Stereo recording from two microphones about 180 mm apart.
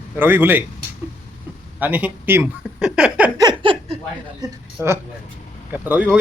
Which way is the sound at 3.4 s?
25° right (ahead or behind).